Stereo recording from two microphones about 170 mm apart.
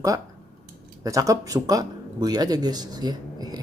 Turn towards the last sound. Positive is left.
turn(degrees=-25)  # may be behind; listen again after turning